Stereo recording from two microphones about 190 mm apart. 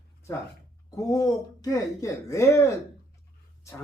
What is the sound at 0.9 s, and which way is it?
Speech, 15° left (ahead or behind).